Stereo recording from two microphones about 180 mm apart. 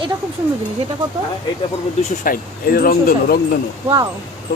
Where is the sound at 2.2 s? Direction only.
50° left (ahead or behind).